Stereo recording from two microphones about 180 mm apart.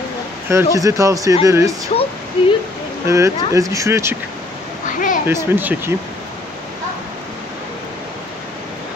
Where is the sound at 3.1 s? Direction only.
15° right (ahead or behind).